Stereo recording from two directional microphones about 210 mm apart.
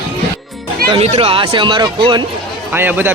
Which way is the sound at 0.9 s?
30° right (ahead or behind).